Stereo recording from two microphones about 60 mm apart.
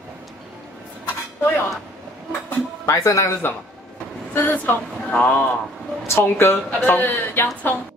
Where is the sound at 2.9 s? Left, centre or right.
Left.